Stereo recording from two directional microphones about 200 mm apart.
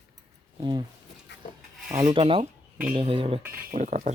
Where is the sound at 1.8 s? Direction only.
15° right (ahead or behind).